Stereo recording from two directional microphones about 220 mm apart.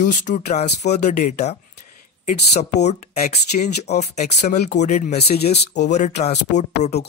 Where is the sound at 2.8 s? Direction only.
30° left (ahead or behind).